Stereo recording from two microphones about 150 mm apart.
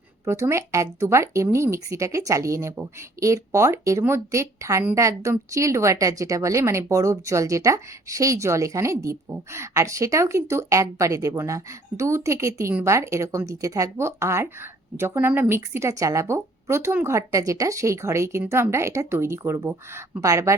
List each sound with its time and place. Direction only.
0.3 s a woman's voice: 20° right (ahead or behind)